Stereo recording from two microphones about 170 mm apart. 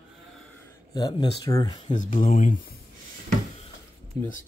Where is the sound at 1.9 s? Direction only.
50° left (ahead or behind).